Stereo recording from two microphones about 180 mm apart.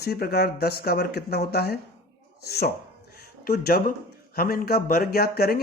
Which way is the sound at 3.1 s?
60° left (ahead or behind).